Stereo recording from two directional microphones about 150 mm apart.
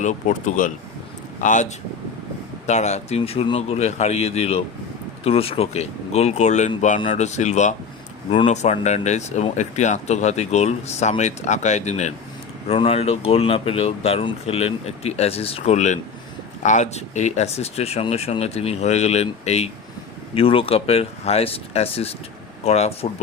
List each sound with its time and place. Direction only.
0.0 s speech: 55° left (ahead or behind)
2.6 s speech: 50° left (ahead or behind)